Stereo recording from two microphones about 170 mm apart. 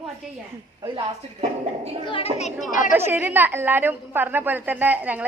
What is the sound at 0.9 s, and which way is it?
Speech, 40° right (ahead or behind).